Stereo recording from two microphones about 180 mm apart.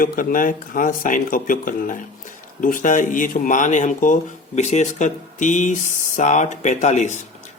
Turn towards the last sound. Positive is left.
turn(degrees=40)  # may be behind; listen again after turning